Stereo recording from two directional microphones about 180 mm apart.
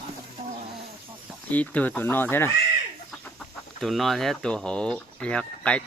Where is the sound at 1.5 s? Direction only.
10° left (ahead or behind).